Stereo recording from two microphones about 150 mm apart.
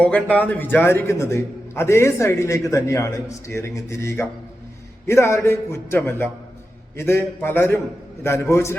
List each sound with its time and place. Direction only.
0.0 s a man's voice: 10° left (ahead or behind)